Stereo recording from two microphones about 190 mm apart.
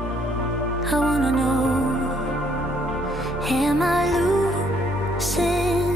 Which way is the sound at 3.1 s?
Centre (ahead or behind).